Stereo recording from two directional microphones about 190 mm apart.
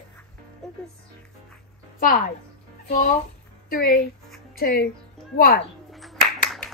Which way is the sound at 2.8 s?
50° left (ahead or behind).